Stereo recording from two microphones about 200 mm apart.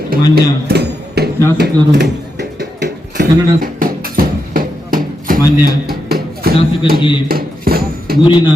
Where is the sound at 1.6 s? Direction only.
55° right (ahead or behind).